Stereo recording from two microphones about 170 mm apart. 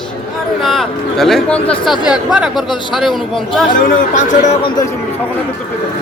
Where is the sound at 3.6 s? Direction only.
50° left (ahead or behind).